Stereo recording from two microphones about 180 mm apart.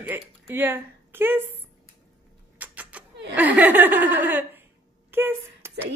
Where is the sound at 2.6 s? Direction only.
10° right (ahead or behind).